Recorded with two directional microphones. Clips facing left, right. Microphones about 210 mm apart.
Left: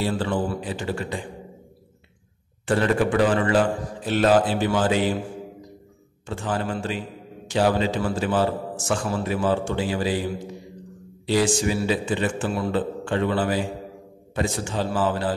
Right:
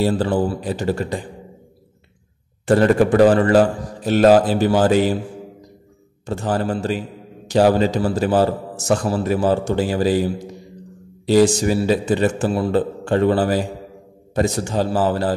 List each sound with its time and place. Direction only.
0.0 s a man's voice: 40° right (ahead or behind)
2.6 s a man's voice: 40° right (ahead or behind)
6.2 s a man's voice: 40° right (ahead or behind)